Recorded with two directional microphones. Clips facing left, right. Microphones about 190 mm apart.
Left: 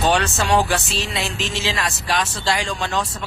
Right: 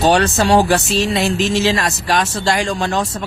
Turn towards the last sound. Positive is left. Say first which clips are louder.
# right 5 dB
turn(degrees=-40)  # may be behind; listen again after turning